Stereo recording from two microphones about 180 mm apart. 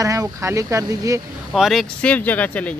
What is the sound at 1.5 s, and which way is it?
Speech, centre (ahead or behind).